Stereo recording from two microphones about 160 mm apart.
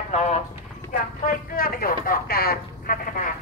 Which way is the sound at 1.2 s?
60° left (ahead or behind).